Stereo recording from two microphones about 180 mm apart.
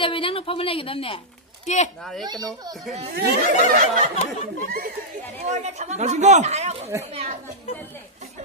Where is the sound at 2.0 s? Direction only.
Centre (ahead or behind).